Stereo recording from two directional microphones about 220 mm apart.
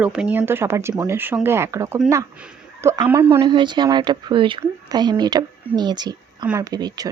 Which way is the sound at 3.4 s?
20° right (ahead or behind).